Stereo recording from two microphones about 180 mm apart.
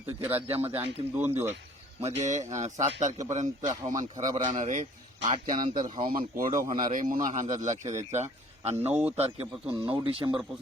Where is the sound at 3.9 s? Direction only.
20° right (ahead or behind).